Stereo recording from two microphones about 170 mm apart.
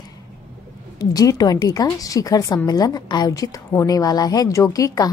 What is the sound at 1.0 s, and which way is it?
A woman's voice, 20° left (ahead or behind).